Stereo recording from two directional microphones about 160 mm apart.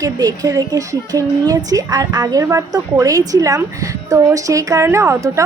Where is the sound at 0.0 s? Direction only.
20° right (ahead or behind).